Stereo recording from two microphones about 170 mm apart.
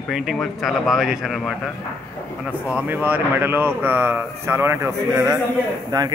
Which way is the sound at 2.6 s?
10° right (ahead or behind).